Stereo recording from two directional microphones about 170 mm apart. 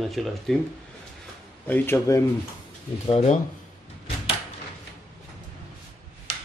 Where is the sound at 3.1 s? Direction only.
35° left (ahead or behind).